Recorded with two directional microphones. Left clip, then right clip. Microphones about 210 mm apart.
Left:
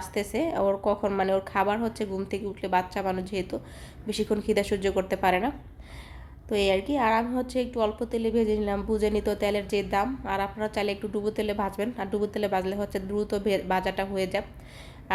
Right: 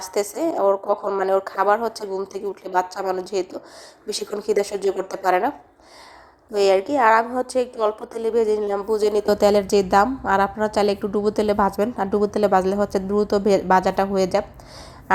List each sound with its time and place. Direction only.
0.1 s a woman's voice: 25° right (ahead or behind)
6.5 s a woman's voice: 25° right (ahead or behind)